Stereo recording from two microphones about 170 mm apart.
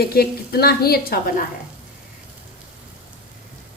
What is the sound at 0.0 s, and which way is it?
A woman's voice, 65° left (ahead or behind).